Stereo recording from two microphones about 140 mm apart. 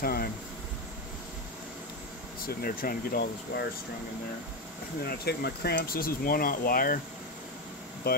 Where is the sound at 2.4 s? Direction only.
90° left.